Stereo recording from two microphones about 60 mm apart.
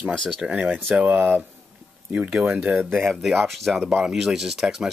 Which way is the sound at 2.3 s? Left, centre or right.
Centre.